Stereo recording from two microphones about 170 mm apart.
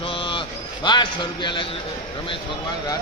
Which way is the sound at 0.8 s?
25° left (ahead or behind).